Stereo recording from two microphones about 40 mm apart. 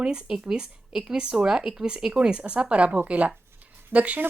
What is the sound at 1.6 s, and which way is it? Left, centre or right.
Speech, centre.